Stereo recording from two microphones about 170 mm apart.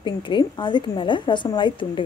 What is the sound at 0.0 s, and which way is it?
A woman's voice, 30° left (ahead or behind).